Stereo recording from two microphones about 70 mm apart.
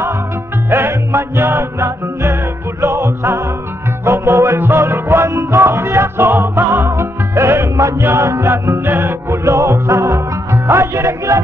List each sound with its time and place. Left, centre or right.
0.7 s music: right